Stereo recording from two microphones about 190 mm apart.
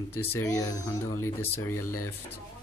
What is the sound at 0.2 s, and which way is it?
Speech, 10° left (ahead or behind).